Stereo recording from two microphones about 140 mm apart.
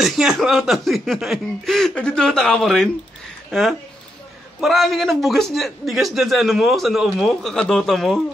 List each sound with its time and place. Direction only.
0.0 s a man's voice: centre (ahead or behind)
4.6 s a man's voice: centre (ahead or behind)